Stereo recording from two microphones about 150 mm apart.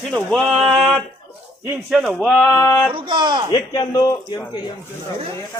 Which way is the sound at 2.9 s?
30° right (ahead or behind).